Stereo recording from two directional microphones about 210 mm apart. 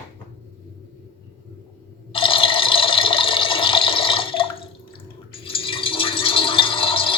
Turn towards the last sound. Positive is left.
turn(degrees=25)  # may be behind; listen again after turning